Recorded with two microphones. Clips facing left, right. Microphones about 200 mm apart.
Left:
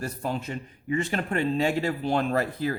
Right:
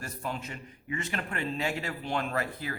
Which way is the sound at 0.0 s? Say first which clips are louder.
Left 6 dB; 35° left (ahead or behind).